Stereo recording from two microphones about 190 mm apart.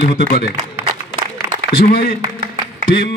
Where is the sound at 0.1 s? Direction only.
50° left (ahead or behind).